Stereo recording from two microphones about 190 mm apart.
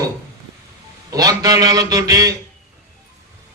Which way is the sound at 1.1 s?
20° right (ahead or behind).